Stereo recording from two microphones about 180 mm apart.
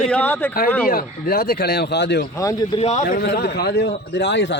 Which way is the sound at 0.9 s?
55° left (ahead or behind).